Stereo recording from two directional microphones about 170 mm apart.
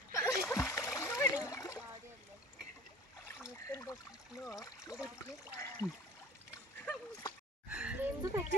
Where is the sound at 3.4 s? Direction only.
15° left (ahead or behind).